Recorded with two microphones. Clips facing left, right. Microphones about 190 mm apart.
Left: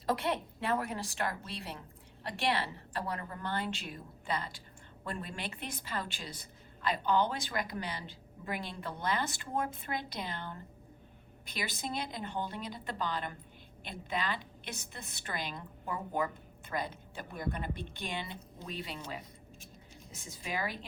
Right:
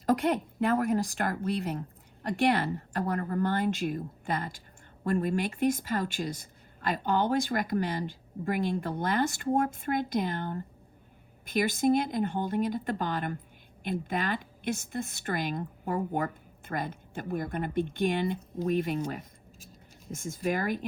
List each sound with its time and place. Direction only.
0.0 s speech: 45° right (ahead or behind)